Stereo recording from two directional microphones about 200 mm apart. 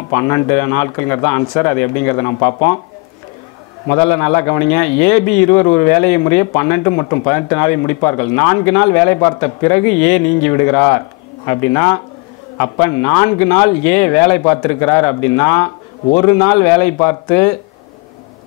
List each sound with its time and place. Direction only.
0.1 s a man's voice: 20° left (ahead or behind)
4.0 s a man's voice: 15° left (ahead or behind)